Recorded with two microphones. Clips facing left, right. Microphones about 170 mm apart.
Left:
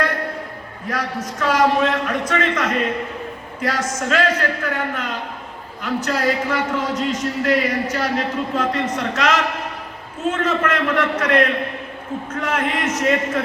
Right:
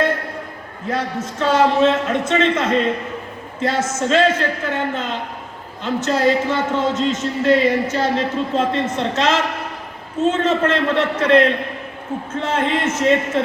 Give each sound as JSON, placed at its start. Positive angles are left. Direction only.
{"t": 0.9, "sound": "speech", "side_deg": -25}